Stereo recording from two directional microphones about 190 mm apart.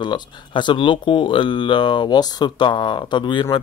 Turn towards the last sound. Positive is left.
turn(degrees=25)  # may be behind; listen again after turning